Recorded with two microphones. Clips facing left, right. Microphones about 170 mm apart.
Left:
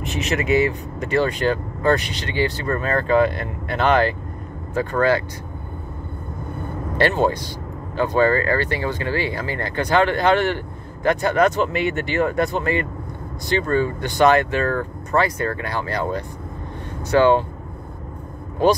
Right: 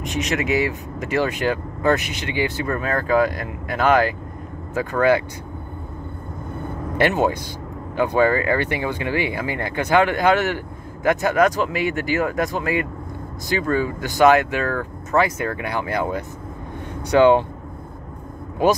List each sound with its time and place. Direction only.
0.0 s speech: centre (ahead or behind)
7.0 s speech: 15° right (ahead or behind)